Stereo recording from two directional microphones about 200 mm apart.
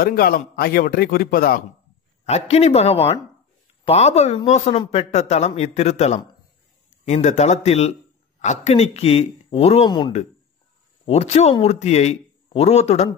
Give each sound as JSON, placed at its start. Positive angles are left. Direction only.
{"t": 0.0, "sound": "a man's voice", "side_deg": 45}
{"t": 2.2, "sound": "a man's voice", "side_deg": 30}